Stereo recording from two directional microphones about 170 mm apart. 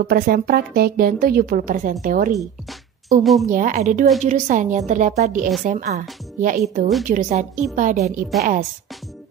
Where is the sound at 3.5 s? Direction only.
50° right (ahead or behind).